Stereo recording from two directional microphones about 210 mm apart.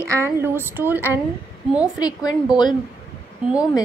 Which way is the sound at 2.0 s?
20° left (ahead or behind).